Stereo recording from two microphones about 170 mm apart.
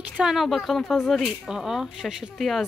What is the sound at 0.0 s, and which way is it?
Speech, 5° right (ahead or behind).